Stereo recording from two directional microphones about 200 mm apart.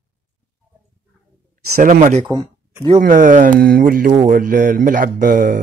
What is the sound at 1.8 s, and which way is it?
Speech, 40° right (ahead or behind).